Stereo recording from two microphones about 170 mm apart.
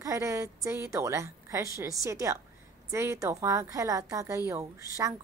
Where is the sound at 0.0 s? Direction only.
20° right (ahead or behind).